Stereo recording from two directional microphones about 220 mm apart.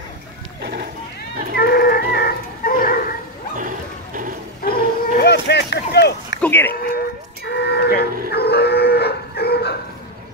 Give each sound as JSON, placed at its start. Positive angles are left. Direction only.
{"t": 1.6, "sound": "dog", "side_deg": 45}
{"t": 3.5, "sound": "a sound", "side_deg": -35}
{"t": 4.6, "sound": "dog", "side_deg": 45}
{"t": 6.4, "sound": "a sound", "side_deg": 10}
{"t": 7.4, "sound": "livestock", "side_deg": 50}
{"t": 8.3, "sound": "dog", "side_deg": 45}